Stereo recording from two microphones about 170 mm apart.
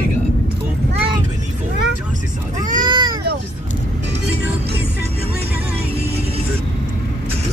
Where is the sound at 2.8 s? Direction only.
25° right (ahead or behind).